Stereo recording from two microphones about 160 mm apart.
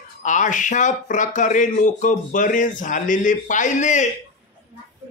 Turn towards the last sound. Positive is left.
turn(degrees=50)  # may be behind; listen again after turning